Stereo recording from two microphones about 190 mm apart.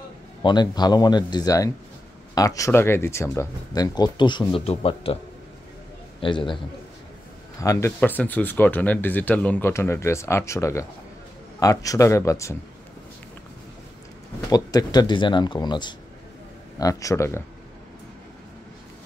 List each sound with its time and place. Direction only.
0.4 s speech: 25° left (ahead or behind)
6.2 s speech: 25° left (ahead or behind)
7.6 s speech: 15° left (ahead or behind)
14.5 s speech: 20° left (ahead or behind)